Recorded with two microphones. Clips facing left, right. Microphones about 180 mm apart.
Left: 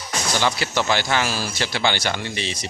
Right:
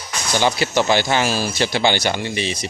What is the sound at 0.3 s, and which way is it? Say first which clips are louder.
Speech: right 5 dB; 20° right (ahead or behind).